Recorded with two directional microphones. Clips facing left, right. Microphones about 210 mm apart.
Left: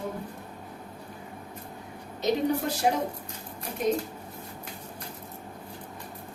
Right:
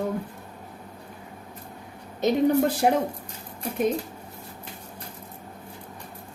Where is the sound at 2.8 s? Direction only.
55° right (ahead or behind).